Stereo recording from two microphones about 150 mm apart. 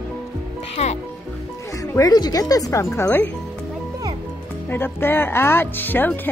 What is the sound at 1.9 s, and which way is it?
Speech, 25° left (ahead or behind).